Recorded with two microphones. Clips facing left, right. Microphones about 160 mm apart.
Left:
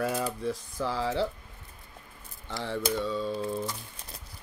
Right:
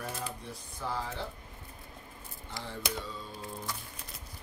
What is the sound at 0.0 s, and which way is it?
Speech, 90° left.